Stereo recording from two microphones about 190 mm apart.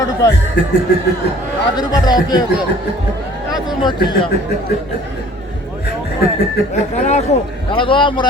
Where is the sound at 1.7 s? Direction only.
20° left (ahead or behind).